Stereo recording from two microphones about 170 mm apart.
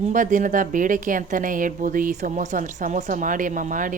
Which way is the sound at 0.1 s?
50° right (ahead or behind).